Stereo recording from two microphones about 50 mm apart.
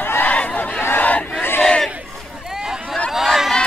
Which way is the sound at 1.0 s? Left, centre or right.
Left.